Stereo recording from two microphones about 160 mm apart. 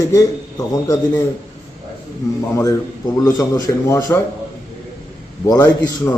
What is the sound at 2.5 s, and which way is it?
A man's voice, 20° left (ahead or behind).